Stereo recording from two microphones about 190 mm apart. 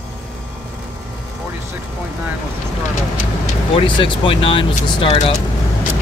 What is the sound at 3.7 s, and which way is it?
Speech, 25° left (ahead or behind).